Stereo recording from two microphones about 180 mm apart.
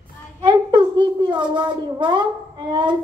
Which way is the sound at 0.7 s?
25° right (ahead or behind).